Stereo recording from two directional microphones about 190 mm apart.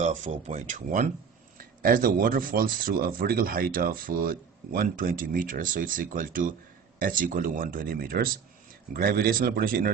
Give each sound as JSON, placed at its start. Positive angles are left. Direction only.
{"t": 0.0, "sound": "speech", "side_deg": -40}